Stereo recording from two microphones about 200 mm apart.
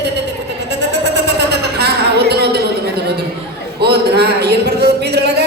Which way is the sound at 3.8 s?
55° right (ahead or behind).